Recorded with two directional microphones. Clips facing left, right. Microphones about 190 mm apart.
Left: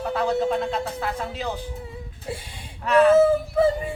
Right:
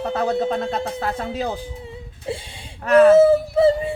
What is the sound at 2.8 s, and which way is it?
Speech, 45° right (ahead or behind).